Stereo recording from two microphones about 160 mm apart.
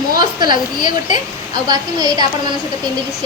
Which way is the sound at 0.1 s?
25° right (ahead or behind).